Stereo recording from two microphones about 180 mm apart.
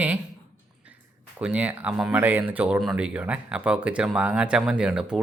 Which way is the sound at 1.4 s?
5° right (ahead or behind).